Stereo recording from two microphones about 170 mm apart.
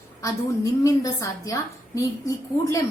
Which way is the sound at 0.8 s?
20° left (ahead or behind).